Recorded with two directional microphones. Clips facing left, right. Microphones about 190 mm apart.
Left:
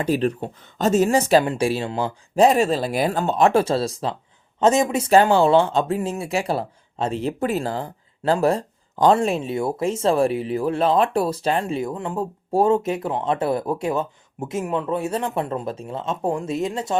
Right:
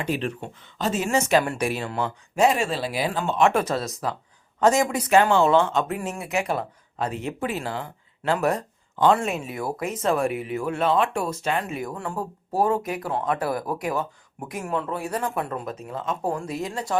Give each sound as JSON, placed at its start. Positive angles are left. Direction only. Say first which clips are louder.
{"t": 0.0, "sound": "speech", "louder": "left 6 dB", "side_deg": 40}